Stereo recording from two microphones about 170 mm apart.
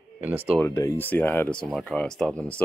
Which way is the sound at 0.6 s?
20° left (ahead or behind).